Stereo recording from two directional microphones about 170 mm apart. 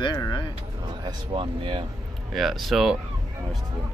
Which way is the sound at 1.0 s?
30° right (ahead or behind).